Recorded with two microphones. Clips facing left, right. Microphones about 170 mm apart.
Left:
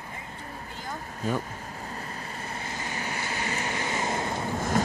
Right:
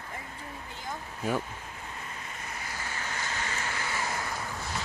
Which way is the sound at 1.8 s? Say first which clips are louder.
Left 4 dB; 40° left (ahead or behind).